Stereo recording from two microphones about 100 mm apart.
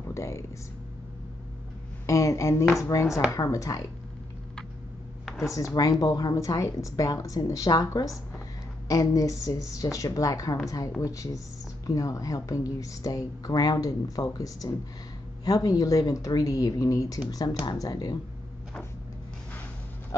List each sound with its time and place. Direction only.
0.0 s speech: 30° left (ahead or behind)
2.0 s speech: 30° left (ahead or behind)
5.2 s a sound: centre (ahead or behind)
5.5 s speech: 35° left (ahead or behind)